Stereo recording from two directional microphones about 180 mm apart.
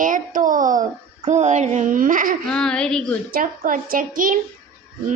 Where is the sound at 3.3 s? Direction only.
50° right (ahead or behind).